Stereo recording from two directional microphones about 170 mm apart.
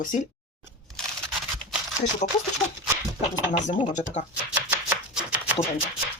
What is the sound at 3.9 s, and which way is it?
Speech, 45° left (ahead or behind).